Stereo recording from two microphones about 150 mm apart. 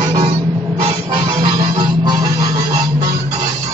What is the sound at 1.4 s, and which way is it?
Music, 25° right (ahead or behind).